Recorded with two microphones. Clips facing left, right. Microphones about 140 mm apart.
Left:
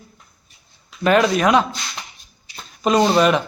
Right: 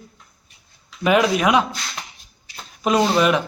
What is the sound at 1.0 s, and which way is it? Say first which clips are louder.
Speech: left 1 dB; 10° right (ahead or behind).